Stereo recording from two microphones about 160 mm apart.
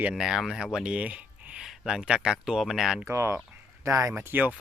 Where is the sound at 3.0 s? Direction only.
15° right (ahead or behind).